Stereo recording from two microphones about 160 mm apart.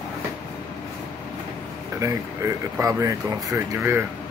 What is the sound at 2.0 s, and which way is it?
Speech, 20° right (ahead or behind).